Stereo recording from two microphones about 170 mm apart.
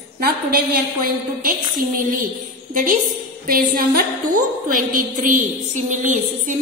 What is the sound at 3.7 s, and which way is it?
Speech, 65° right (ahead or behind).